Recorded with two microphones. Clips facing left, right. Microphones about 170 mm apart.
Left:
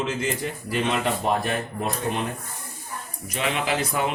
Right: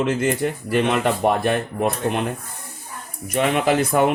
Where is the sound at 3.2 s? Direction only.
50° right (ahead or behind).